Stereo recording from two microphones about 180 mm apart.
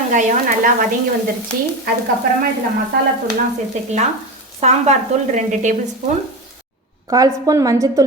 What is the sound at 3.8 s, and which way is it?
A woman's voice, 40° right (ahead or behind).